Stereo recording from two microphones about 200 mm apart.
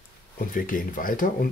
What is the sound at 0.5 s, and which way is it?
Speech, 40° left (ahead or behind).